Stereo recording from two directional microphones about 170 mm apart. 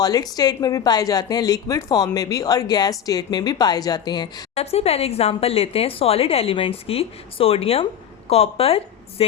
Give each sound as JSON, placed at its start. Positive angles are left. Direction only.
{"t": 0.0, "sound": "a woman's voice", "side_deg": 20}
{"t": 4.5, "sound": "a woman's voice", "side_deg": 35}